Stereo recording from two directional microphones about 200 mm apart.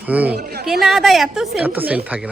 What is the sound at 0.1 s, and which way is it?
Speech, 5° right (ahead or behind).